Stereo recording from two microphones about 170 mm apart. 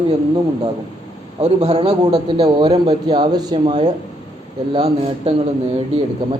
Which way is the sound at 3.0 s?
25° right (ahead or behind).